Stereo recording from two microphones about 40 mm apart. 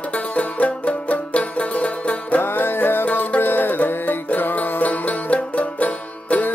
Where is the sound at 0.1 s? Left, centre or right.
Left.